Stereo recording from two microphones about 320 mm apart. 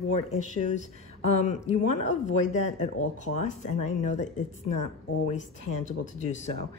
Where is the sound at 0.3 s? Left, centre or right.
Left.